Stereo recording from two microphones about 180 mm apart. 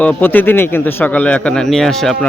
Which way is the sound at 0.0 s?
10° left (ahead or behind).